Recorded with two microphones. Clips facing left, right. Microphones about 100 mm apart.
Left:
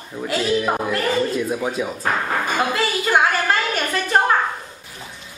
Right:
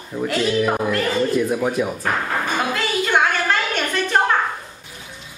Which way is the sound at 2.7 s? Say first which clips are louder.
Even; 5° left (ahead or behind).